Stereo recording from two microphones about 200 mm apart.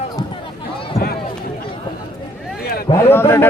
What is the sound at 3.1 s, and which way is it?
Speech, 10° left (ahead or behind).